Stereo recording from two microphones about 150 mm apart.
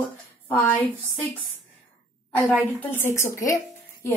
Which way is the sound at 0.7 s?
10° left (ahead or behind).